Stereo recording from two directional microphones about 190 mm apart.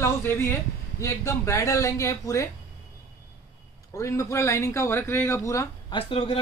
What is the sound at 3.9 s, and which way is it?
A man's voice, 15° left (ahead or behind).